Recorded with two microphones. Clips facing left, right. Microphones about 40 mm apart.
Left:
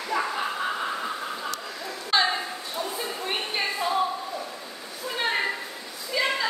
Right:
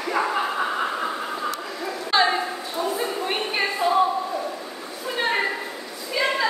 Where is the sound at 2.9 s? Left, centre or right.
Centre.